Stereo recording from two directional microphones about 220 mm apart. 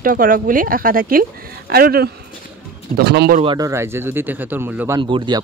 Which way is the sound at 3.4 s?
20° right (ahead or behind).